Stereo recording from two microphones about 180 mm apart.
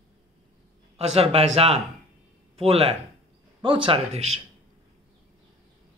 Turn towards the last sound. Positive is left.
turn(degrees=-35)  # may be behind; listen again after turning